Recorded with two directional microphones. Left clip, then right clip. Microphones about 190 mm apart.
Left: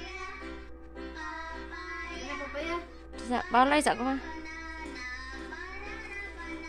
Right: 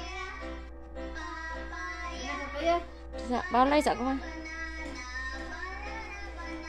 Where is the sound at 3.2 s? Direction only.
5° left (ahead or behind).